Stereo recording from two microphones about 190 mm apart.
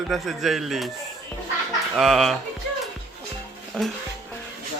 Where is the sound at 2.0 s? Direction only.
Centre (ahead or behind).